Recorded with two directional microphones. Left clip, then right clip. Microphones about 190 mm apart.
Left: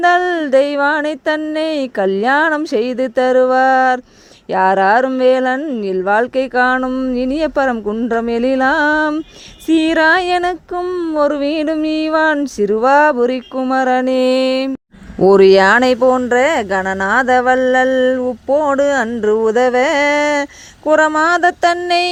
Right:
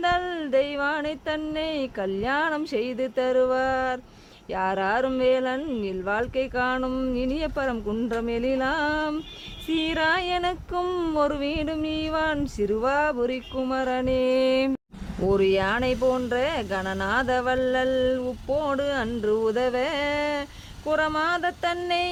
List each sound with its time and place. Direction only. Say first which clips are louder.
0.0 s speech: left 12 dB; 45° left (ahead or behind)
6.8 s a sound: left 9 dB; 30° left (ahead or behind)
7.2 s speech: left 15 dB; 45° left (ahead or behind)
10.8 s speech: left 7 dB; 20° left (ahead or behind)
11.2 s speech: left 12 dB; 35° left (ahead or behind)
15.2 s speech: left 14 dB; 50° left (ahead or behind)
19.0 s a sound: left 10 dB; 35° left (ahead or behind)